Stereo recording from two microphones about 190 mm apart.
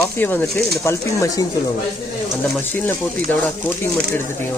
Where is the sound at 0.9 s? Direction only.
15° left (ahead or behind).